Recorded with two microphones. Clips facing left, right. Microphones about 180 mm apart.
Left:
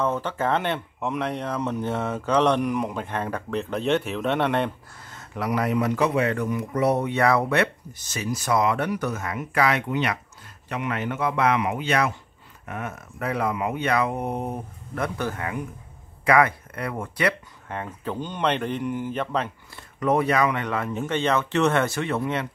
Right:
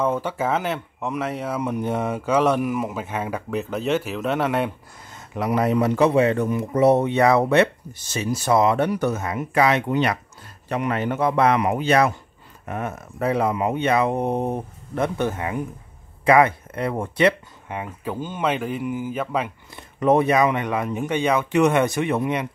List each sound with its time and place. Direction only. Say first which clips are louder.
0.0 s speech: right 2 dB; 10° right (ahead or behind)
5.1 s speech: right 3 dB; 20° right (ahead or behind)
9.8 s speech: right 4 dB; 35° right (ahead or behind)
17.7 s speech: right 1 dB; 10° right (ahead or behind)
20.0 s speech: right 4 dB; 25° right (ahead or behind)